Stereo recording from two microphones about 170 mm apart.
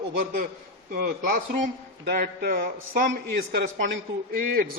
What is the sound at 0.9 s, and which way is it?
A man's voice, 60° right (ahead or behind).